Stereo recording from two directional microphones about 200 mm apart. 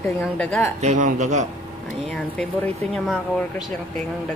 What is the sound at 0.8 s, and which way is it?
Speech, 35° right (ahead or behind).